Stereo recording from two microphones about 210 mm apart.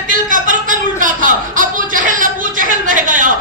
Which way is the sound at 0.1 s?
40° right (ahead or behind).